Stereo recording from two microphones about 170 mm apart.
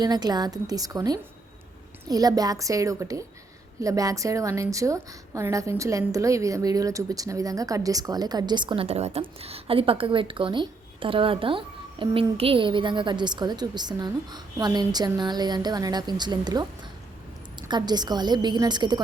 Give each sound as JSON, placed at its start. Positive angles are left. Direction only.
{"t": 0.0, "sound": "a woman's voice", "side_deg": -25}
{"t": 17.7, "sound": "a woman's voice", "side_deg": -25}